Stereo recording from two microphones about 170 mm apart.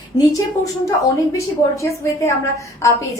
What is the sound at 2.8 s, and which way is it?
Speech, 15° left (ahead or behind).